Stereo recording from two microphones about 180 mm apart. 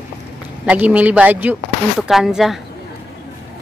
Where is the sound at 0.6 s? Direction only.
10° right (ahead or behind).